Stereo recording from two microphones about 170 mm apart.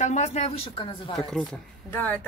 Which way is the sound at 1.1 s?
5° left (ahead or behind).